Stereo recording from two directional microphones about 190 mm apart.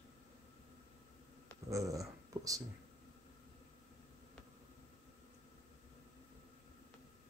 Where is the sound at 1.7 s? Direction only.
15° right (ahead or behind).